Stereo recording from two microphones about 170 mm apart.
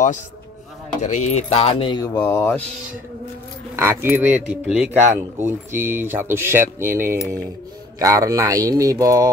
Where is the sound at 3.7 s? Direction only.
15° right (ahead or behind).